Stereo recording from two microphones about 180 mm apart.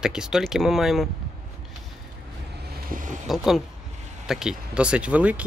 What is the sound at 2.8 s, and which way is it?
Vehicle, 45° right (ahead or behind).